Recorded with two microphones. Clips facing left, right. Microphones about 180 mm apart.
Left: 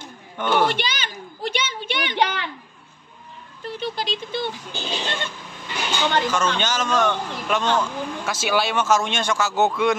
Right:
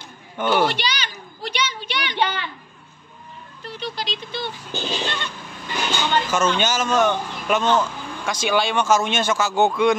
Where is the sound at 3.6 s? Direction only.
50° left (ahead or behind).